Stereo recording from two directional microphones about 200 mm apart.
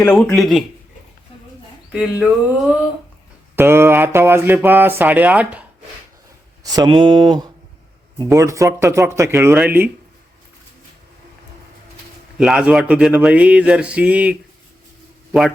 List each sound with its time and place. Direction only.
0.0 s speech: 5° left (ahead or behind)
1.9 s speech: 5° right (ahead or behind)
3.5 s speech: 10° right (ahead or behind)
6.7 s speech: 20° right (ahead or behind)
12.4 s a man's voice: 5° right (ahead or behind)